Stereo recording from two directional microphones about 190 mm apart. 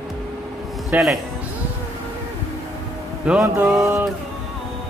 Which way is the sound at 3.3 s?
5° right (ahead or behind).